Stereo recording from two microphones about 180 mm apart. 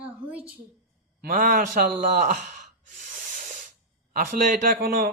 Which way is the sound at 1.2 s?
50° right (ahead or behind).